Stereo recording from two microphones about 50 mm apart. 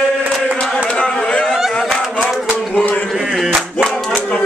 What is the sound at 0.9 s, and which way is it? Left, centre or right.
Speech, centre.